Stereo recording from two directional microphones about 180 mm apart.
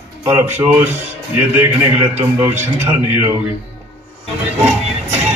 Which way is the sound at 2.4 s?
15° right (ahead or behind).